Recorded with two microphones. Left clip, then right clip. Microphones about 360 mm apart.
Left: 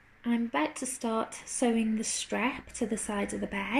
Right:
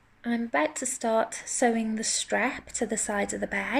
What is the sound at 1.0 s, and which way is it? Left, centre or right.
Speech, centre.